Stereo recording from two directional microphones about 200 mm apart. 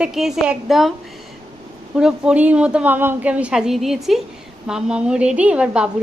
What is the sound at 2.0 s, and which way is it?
A woman's voice, 5° right (ahead or behind).